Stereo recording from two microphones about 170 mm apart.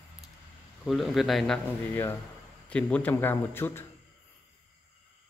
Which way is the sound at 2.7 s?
5° left (ahead or behind).